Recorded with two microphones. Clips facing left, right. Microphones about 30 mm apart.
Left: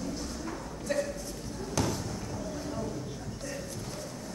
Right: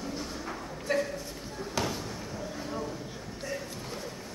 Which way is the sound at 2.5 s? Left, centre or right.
Right.